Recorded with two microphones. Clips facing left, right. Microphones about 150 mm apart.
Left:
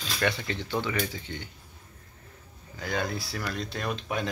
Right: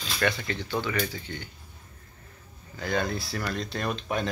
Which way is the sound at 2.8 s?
10° left (ahead or behind).